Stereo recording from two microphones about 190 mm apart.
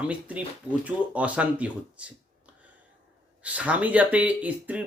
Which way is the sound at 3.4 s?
5° right (ahead or behind).